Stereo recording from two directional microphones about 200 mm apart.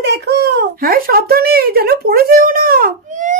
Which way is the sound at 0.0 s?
55° right (ahead or behind).